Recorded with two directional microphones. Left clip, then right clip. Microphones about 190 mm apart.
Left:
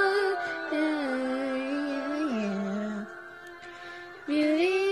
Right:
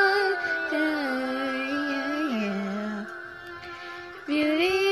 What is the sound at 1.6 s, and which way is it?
Music, 30° right (ahead or behind).